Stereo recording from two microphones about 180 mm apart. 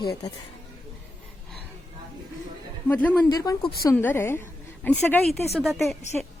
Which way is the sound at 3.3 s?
20° left (ahead or behind).